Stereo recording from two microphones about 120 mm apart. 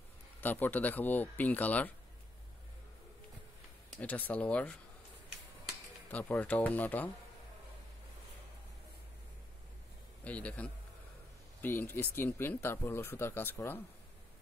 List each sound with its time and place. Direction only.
0.4 s speech: 15° left (ahead or behind)
4.0 s speech: 10° left (ahead or behind)
6.0 s speech: 15° left (ahead or behind)
10.2 s speech: 10° left (ahead or behind)